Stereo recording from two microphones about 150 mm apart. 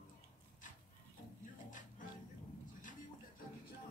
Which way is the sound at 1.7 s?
60° left (ahead or behind).